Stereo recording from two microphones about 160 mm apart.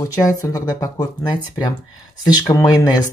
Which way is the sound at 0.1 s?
20° left (ahead or behind).